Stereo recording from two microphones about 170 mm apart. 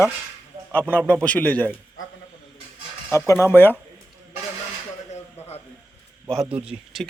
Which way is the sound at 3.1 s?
15° left (ahead or behind).